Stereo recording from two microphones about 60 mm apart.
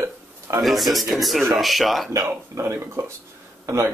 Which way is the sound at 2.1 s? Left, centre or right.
Right.